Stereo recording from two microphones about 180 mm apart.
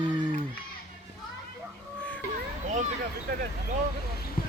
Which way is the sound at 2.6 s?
45° right (ahead or behind).